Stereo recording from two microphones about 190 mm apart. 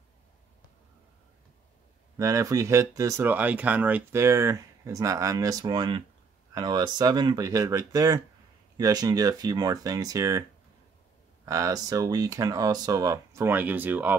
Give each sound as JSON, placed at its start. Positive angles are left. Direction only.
{"t": 2.1, "sound": "speech", "side_deg": -15}
{"t": 11.4, "sound": "speech", "side_deg": -20}